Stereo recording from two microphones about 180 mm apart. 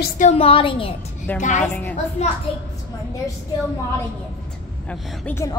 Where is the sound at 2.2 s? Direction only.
40° left (ahead or behind).